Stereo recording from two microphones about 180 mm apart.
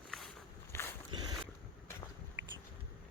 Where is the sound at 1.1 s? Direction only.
25° right (ahead or behind).